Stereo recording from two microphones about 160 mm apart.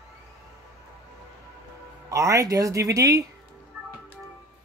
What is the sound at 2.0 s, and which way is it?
Speech, 20° right (ahead or behind).